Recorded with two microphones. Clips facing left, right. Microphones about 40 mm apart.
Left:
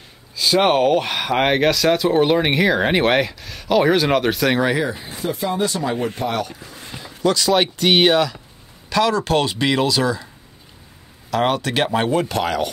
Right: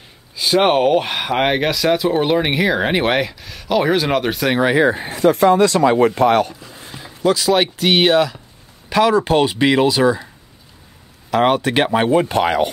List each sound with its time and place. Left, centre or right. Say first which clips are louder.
0.4 s speech: right 1 dB; centre
4.6 s speech: right 4 dB; centre
4.8 s speech: right 9 dB; right
5.1 s speech: right 14 dB; right
7.0 s speech: right 2 dB; centre
8.9 s speech: right 3 dB; centre
11.2 s speech: right 4 dB; centre